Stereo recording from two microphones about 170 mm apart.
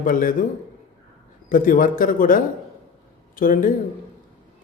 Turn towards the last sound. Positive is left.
turn(degrees=55)  # may be behind; listen again after turning